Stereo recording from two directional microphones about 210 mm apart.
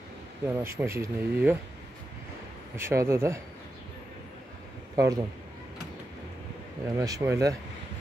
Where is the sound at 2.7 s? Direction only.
10° right (ahead or behind).